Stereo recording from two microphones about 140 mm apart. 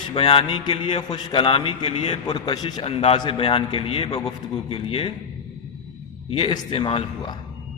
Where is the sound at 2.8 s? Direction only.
45° left (ahead or behind).